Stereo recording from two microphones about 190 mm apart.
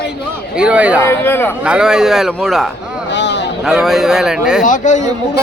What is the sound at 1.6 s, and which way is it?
A man's voice, 5° right (ahead or behind).